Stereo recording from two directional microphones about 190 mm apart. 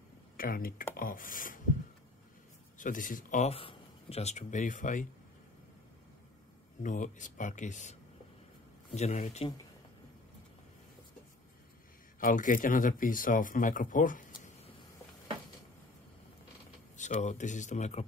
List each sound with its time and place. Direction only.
0.4 s speech: 50° left (ahead or behind)
2.8 s speech: 45° left (ahead or behind)
6.8 s speech: 40° left (ahead or behind)
8.9 s speech: 40° left (ahead or behind)
12.2 s speech: 45° left (ahead or behind)
16.9 s speech: 40° left (ahead or behind)